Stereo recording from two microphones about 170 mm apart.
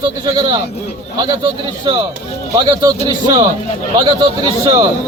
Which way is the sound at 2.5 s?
20° right (ahead or behind).